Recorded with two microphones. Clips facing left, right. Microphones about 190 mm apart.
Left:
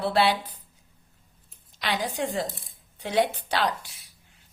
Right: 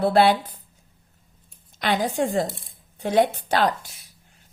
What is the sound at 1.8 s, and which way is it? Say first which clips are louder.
Speech: right 6 dB; 50° right (ahead or behind).